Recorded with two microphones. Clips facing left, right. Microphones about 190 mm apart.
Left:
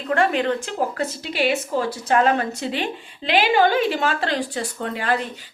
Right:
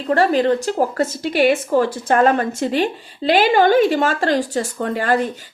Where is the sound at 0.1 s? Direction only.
35° right (ahead or behind).